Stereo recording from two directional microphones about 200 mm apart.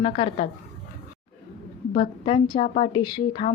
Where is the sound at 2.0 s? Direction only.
25° left (ahead or behind).